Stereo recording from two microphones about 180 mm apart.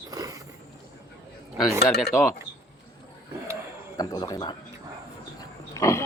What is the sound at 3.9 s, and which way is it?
Speech, 20° left (ahead or behind).